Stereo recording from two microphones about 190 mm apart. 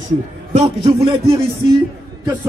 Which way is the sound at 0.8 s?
25° right (ahead or behind).